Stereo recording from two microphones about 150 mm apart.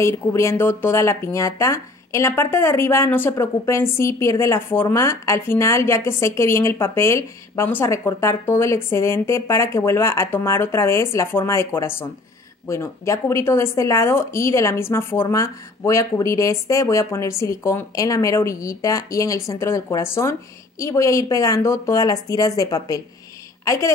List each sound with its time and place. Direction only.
0.0 s a woman's voice: 20° left (ahead or behind)